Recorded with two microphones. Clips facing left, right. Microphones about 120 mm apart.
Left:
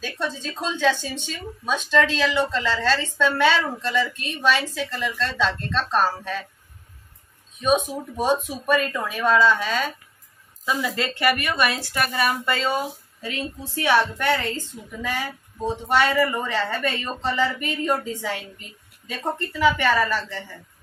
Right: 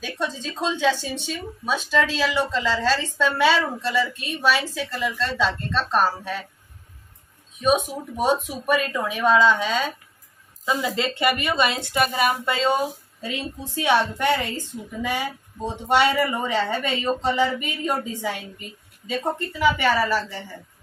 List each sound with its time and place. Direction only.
0.0 s a woman's voice: 15° right (ahead or behind)
7.6 s a woman's voice: 15° right (ahead or behind)